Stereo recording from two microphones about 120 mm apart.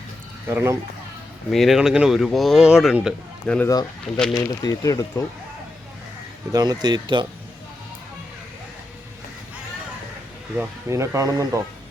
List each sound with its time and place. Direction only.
0.5 s speech: 20° right (ahead or behind)
1.5 s speech: centre (ahead or behind)
3.4 s speech: 10° left (ahead or behind)
4.4 s speech: 30° left (ahead or behind)
6.5 s speech: 35° right (ahead or behind)
10.6 s speech: 25° right (ahead or behind)